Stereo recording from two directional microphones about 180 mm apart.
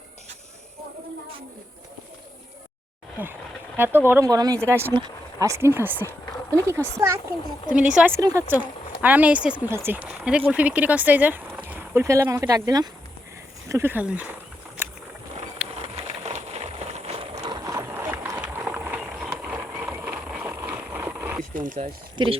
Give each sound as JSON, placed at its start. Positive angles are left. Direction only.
{"t": 3.2, "sound": "speech", "side_deg": -10}
{"t": 14.8, "sound": "vehicle", "side_deg": -10}
{"t": 15.6, "sound": "ratchet", "side_deg": -5}
{"t": 16.0, "sound": "a sound", "side_deg": -35}
{"t": 17.4, "sound": "a sound", "side_deg": -20}
{"t": 21.5, "sound": "speech", "side_deg": -45}
{"t": 22.2, "sound": "speech", "side_deg": -25}